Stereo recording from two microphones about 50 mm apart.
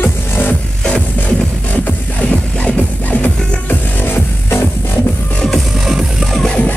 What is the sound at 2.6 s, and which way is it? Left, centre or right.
Music, left.